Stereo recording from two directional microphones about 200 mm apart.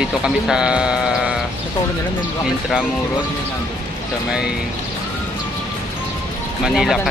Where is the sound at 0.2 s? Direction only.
5° right (ahead or behind).